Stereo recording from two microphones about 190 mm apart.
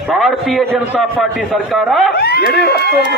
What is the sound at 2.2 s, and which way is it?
Speech, 55° left (ahead or behind).